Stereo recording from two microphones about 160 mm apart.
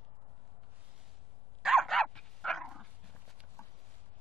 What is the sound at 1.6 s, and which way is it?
Dog, centre (ahead or behind).